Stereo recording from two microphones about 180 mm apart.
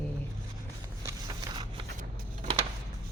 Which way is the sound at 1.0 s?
25° right (ahead or behind).